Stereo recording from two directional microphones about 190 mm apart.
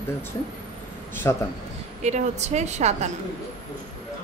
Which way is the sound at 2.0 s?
35° right (ahead or behind).